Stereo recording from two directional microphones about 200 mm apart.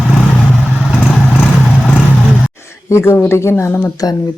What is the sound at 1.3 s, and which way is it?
Vehicle, 5° right (ahead or behind).